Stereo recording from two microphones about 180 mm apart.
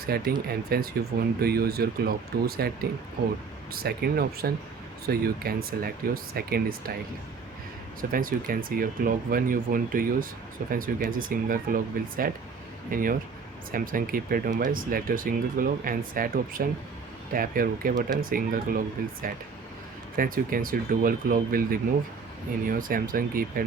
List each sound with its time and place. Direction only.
0.1 s speech: 60° right (ahead or behind)
8.1 s speech: 50° right (ahead or behind)
20.1 s speech: 50° right (ahead or behind)